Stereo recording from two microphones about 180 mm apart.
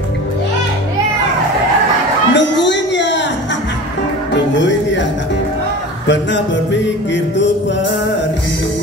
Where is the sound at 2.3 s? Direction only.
80° left.